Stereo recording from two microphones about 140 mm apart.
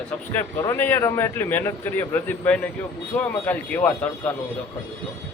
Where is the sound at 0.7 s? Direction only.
15° left (ahead or behind).